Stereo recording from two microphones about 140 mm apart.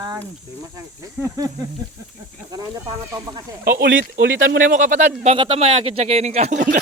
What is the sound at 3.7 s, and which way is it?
Speech, 90° right.